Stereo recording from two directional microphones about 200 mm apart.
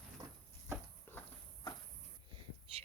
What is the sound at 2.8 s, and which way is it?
Whispering, 30° right (ahead or behind).